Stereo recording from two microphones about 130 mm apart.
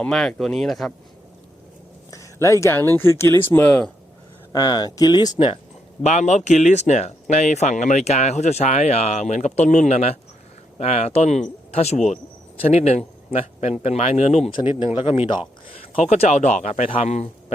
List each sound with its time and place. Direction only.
0.0 s speech: 5° left (ahead or behind)
2.0 s speech: 25° left (ahead or behind)
4.5 s speech: 30° left (ahead or behind)
6.0 s speech: 60° left (ahead or behind)
14.5 s speech: 40° left (ahead or behind); by 17.2 s 55° left (ahead or behind)